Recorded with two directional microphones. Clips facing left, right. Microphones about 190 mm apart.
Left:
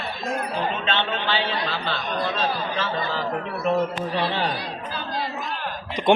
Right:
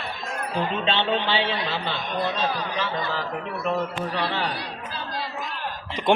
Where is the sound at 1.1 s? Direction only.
25° right (ahead or behind).